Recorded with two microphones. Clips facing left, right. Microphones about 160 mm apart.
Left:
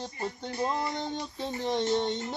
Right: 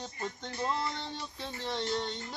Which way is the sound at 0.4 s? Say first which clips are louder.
Left 3 dB; 15° left (ahead or behind).